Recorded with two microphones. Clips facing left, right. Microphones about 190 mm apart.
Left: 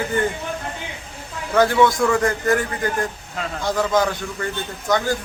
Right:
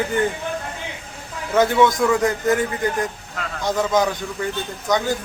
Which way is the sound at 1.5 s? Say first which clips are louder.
Even; 20° right (ahead or behind).